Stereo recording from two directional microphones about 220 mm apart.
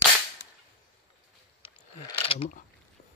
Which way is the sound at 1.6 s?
25° left (ahead or behind).